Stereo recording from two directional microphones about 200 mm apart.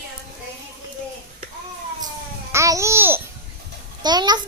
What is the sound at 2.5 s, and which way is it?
Babbling, 15° right (ahead or behind).